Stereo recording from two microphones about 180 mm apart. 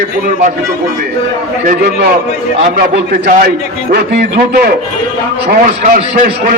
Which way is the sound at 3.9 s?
55° right (ahead or behind).